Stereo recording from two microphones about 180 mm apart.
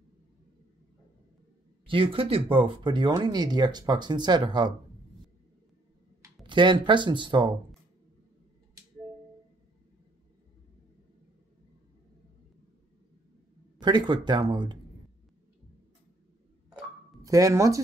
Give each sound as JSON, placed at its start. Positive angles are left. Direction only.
{"t": 1.9, "sound": "speech", "side_deg": -30}
{"t": 6.4, "sound": "speech", "side_deg": -25}
{"t": 13.7, "sound": "speech", "side_deg": -25}
{"t": 17.2, "sound": "speech", "side_deg": -20}